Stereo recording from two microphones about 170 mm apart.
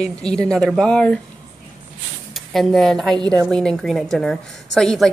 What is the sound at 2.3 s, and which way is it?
A woman's voice, centre (ahead or behind).